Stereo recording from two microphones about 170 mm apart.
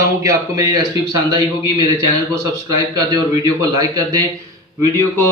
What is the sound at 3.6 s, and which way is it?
Speech, 20° right (ahead or behind).